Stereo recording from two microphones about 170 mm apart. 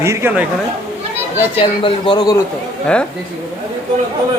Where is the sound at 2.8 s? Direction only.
5° left (ahead or behind).